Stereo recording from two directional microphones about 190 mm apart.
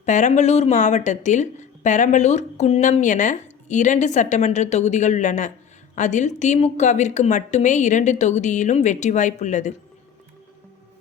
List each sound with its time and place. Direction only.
0.0 s speech: 40° left (ahead or behind)